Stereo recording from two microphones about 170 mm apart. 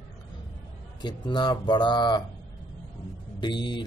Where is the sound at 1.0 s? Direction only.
25° left (ahead or behind).